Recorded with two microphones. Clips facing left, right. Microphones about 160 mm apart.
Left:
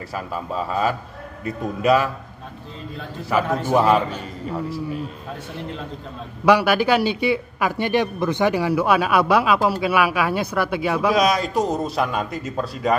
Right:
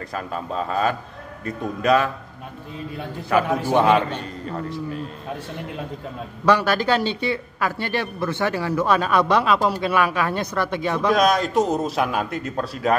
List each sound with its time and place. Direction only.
0.1 s a man's voice: 5° left (ahead or behind)
3.7 s a man's voice: 5° left (ahead or behind)
6.4 s a man's voice: 10° left (ahead or behind)